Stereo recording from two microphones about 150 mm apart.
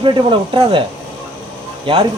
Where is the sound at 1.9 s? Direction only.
35° right (ahead or behind).